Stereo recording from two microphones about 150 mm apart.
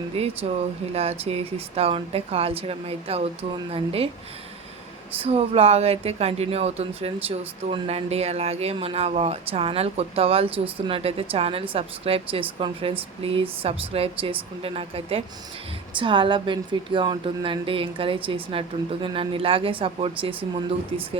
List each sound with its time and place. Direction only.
0.1 s speech: 40° right (ahead or behind)
5.2 s speech: 40° right (ahead or behind)